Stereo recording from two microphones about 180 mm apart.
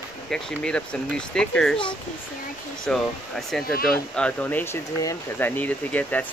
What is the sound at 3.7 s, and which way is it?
Speech, 55° left (ahead or behind).